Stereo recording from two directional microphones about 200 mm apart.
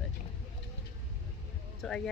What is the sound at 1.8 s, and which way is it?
Speech, centre (ahead or behind).